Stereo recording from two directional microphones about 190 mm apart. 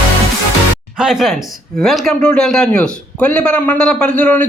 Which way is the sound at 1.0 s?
Centre (ahead or behind).